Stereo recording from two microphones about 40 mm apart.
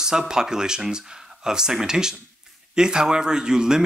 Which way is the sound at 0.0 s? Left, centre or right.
Centre.